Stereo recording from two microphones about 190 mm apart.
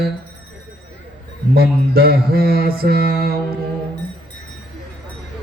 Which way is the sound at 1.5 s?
55° right (ahead or behind).